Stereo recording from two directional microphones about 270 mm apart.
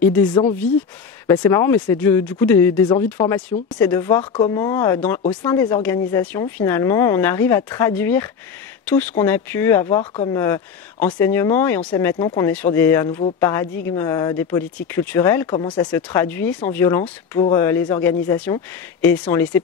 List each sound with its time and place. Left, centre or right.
0.0 s speech: centre
0.3 s speech: centre